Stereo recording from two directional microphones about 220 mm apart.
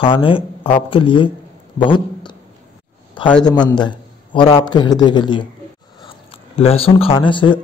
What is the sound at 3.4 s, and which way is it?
A man's voice, 20° left (ahead or behind).